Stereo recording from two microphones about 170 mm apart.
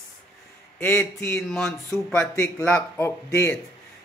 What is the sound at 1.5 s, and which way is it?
Speech, centre (ahead or behind).